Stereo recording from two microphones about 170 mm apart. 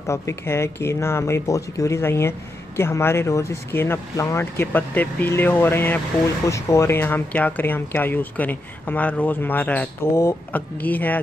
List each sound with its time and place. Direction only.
0.0 s speech: 15° left (ahead or behind)